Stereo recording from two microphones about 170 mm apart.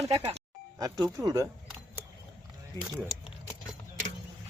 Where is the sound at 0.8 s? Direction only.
20° right (ahead or behind).